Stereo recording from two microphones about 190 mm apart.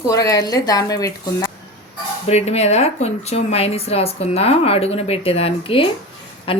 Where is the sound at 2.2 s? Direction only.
35° left (ahead or behind).